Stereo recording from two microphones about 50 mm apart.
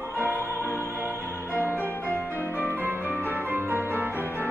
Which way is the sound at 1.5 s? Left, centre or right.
Left.